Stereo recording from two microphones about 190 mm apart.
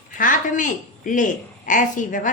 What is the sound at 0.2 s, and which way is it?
A woman's voice, 45° left (ahead or behind).